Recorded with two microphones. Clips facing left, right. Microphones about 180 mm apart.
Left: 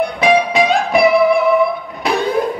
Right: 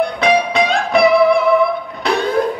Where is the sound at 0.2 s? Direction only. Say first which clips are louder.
Left 3 dB; centre (ahead or behind).